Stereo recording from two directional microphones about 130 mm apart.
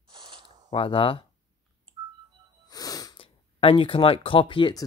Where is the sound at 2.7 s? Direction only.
30° left (ahead or behind).